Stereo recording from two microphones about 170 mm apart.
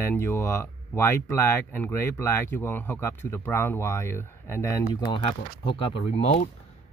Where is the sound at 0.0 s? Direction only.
15° left (ahead or behind).